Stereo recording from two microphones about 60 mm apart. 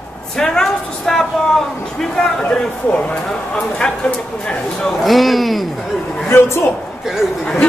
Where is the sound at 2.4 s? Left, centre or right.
Centre.